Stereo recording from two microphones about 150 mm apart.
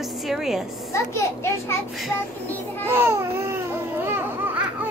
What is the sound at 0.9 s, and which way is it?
Speech, 20° left (ahead or behind).